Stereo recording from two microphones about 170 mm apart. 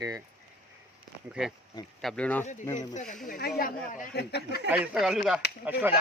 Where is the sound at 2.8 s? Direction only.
45° left (ahead or behind).